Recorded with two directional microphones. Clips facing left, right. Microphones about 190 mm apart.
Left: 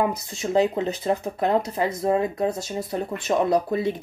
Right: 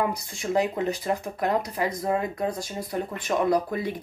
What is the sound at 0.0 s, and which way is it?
Speech, 25° left (ahead or behind).